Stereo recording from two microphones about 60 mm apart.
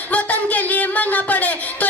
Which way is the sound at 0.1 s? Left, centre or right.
Left.